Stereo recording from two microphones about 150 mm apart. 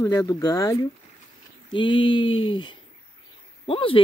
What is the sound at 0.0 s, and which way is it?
Speech, 20° left (ahead or behind).